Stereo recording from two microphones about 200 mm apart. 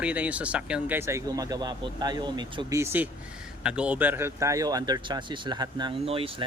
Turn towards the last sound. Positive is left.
turn(degrees=-25)  # may be behind; listen again after turning